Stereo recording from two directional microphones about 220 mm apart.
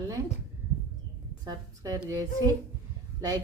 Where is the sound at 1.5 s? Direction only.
15° right (ahead or behind).